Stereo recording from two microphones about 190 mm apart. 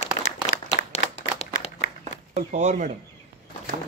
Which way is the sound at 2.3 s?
40° right (ahead or behind).